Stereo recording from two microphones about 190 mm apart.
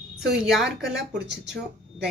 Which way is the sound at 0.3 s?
Centre (ahead or behind).